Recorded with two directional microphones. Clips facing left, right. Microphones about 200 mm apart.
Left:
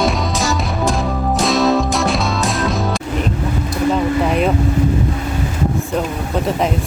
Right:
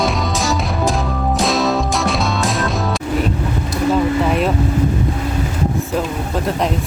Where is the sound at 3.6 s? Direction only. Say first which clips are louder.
Right 1 dB; centre (ahead or behind).